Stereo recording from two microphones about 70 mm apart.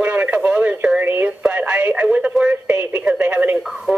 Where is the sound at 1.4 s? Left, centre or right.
Centre.